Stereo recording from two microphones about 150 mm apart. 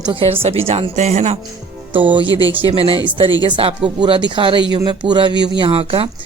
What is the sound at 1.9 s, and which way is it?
Speech, 35° right (ahead or behind).